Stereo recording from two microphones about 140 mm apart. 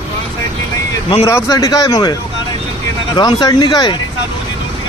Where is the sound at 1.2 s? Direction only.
25° left (ahead or behind).